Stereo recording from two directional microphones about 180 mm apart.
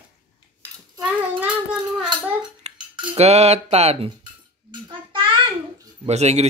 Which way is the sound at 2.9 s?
35° right (ahead or behind).